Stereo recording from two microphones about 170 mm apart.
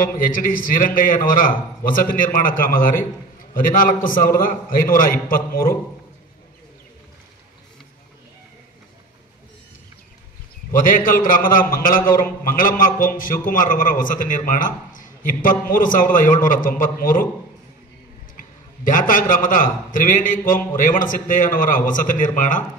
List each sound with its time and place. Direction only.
0.3 s a man's voice: 50° left (ahead or behind)
10.9 s a man's voice: 55° left (ahead or behind)
18.9 s a man's voice: 55° left (ahead or behind)